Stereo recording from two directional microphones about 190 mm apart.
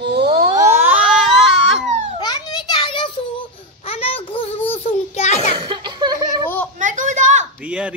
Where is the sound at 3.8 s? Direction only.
30° left (ahead or behind).